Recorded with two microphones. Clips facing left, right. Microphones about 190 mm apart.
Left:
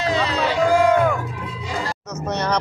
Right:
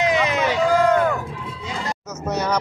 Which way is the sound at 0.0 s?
20° right (ahead or behind).